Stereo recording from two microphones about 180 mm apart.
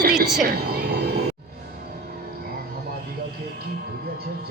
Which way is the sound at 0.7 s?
60° right (ahead or behind).